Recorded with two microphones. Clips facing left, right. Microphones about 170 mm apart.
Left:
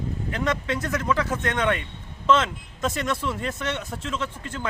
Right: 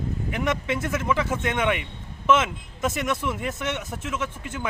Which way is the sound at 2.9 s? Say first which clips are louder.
Even; 20° right (ahead or behind).